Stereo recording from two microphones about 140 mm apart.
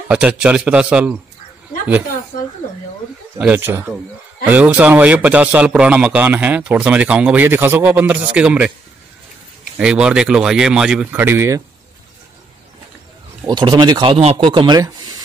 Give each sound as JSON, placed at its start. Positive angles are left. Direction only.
{"t": 0.1, "sound": "a man's voice", "side_deg": -10}
{"t": 3.3, "sound": "a man's voice", "side_deg": -10}
{"t": 9.8, "sound": "a man's voice", "side_deg": -5}
{"t": 13.5, "sound": "speech", "side_deg": -30}
{"t": 14.8, "sound": "a sound", "side_deg": -25}